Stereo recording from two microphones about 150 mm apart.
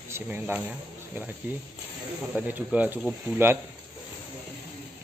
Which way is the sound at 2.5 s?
10° right (ahead or behind).